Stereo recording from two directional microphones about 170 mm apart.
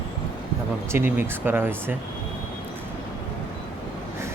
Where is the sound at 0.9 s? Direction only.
15° right (ahead or behind).